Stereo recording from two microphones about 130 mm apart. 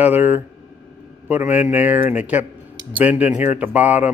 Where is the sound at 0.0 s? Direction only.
15° right (ahead or behind).